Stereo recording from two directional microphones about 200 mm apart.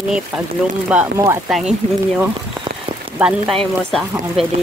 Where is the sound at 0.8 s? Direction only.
10° right (ahead or behind).